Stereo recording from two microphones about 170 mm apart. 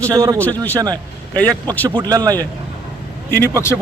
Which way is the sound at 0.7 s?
20° right (ahead or behind).